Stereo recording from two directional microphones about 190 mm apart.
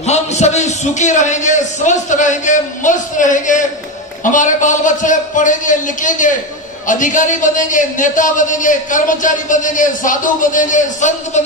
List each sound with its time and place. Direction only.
0.0 s a man's voice: 35° left (ahead or behind)